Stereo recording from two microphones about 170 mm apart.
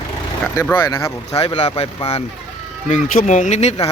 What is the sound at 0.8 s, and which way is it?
Speech, 20° left (ahead or behind).